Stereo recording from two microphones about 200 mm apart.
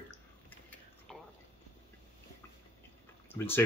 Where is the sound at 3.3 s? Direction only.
10° left (ahead or behind).